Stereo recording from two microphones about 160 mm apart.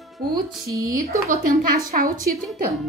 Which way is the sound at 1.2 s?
70° right (ahead or behind).